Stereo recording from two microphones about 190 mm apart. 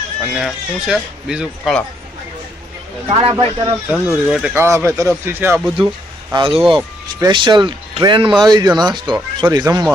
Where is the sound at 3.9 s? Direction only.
Centre (ahead or behind).